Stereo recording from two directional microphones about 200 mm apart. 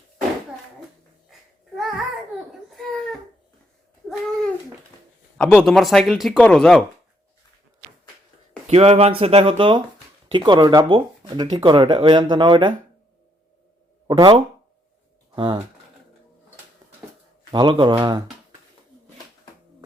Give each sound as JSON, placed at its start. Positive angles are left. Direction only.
{"t": 1.3, "sound": "babbling", "side_deg": 0}
{"t": 2.5, "sound": "baby cry", "side_deg": 0}
{"t": 5.4, "sound": "speech", "side_deg": 10}
{"t": 8.6, "sound": "speech", "side_deg": -30}
{"t": 14.1, "sound": "speech", "side_deg": -25}
{"t": 16.8, "sound": "a sound", "side_deg": -20}
{"t": 17.5, "sound": "speech", "side_deg": -25}